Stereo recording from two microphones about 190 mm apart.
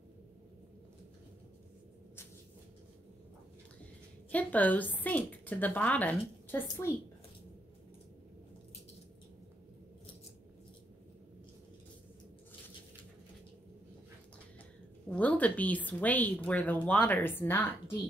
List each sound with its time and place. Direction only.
4.3 s speech: 10° left (ahead or behind)
15.0 s speech: 5° left (ahead or behind)